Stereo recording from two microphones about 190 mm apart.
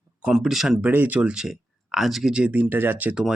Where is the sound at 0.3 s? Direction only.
Centre (ahead or behind).